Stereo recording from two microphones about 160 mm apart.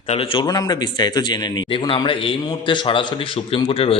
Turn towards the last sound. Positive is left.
turn(degrees=35)  # may be behind; listen again after turning